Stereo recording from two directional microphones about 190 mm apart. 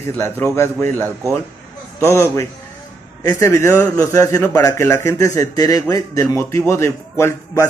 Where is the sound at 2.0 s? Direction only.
15° left (ahead or behind).